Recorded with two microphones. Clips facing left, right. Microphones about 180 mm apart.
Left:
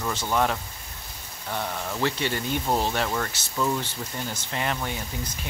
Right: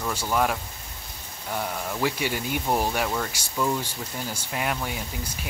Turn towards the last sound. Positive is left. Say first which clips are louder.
# even
turn(degrees=-10)  # may be behind; listen again after turning